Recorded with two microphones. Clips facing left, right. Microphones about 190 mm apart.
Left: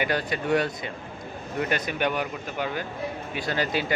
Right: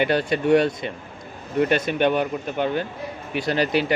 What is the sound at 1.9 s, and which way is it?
Speech, 25° right (ahead or behind).